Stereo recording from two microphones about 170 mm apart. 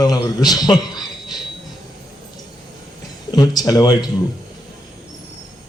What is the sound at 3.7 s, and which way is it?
Speech, 25° left (ahead or behind).